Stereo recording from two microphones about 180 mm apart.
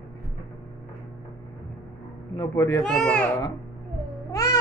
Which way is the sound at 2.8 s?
5° left (ahead or behind).